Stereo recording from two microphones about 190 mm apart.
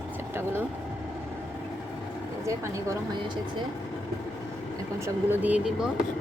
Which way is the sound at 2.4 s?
15° right (ahead or behind).